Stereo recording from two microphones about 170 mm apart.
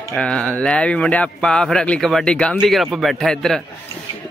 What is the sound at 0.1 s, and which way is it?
Speech, 5° left (ahead or behind).